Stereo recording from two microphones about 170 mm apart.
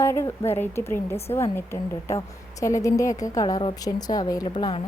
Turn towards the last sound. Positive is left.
turn(degrees=30)  # may be behind; listen again after turning